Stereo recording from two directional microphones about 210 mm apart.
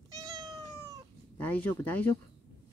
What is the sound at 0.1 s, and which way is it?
Cat, 15° right (ahead or behind).